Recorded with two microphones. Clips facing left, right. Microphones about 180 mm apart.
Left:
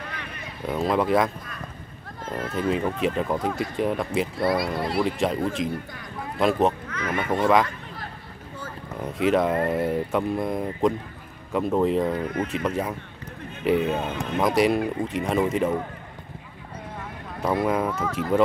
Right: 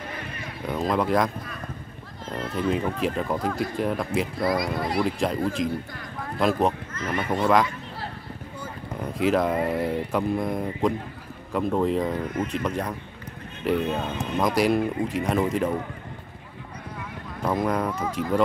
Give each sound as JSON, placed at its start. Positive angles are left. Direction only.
{"t": 0.7, "sound": "speech", "side_deg": 0}
{"t": 6.9, "sound": "duck", "side_deg": 70}
{"t": 7.2, "sound": "speech", "side_deg": 0}
{"t": 9.0, "sound": "speech", "side_deg": 0}
{"t": 17.4, "sound": "speech", "side_deg": 5}